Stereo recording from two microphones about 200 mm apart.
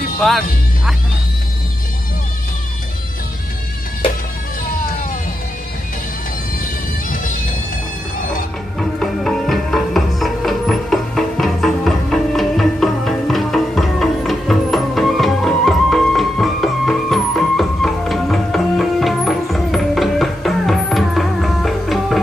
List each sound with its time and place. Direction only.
0.2 s speech: centre (ahead or behind)
8.7 s music: centre (ahead or behind)